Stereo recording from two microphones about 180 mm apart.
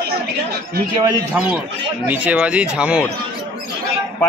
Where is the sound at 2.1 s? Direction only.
10° right (ahead or behind).